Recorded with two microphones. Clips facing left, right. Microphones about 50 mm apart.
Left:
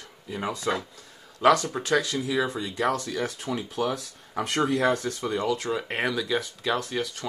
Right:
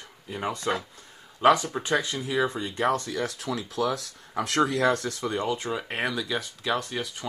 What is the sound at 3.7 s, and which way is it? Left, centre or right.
Speech, right.